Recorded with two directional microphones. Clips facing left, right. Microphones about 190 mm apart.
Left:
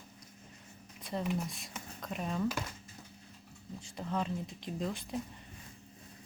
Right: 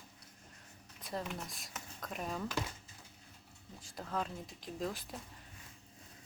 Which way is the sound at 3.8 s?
Centre (ahead or behind).